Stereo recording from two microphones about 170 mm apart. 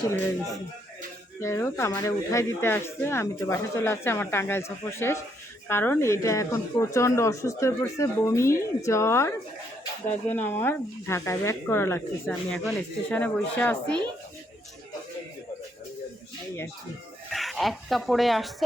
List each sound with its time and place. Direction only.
1.4 s speech: 15° left (ahead or behind)
17.3 s speech: centre (ahead or behind)